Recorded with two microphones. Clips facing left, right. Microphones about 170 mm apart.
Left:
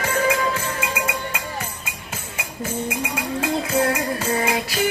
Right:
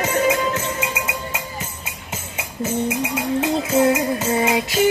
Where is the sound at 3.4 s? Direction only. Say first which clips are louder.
Right 3 dB; 20° right (ahead or behind).